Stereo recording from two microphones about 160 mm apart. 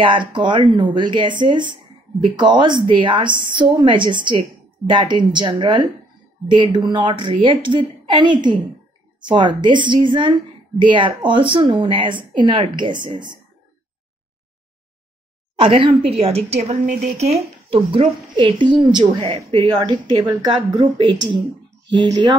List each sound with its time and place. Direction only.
0.0 s speech: 30° right (ahead or behind)
15.6 s a woman's voice: 35° right (ahead or behind)
17.9 s speech: 30° right (ahead or behind)